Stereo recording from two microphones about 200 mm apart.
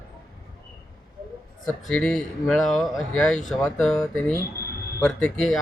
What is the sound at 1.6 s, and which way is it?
Speech, 5° left (ahead or behind).